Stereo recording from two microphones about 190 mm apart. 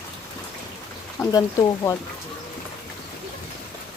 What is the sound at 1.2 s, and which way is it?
Speech, 15° left (ahead or behind).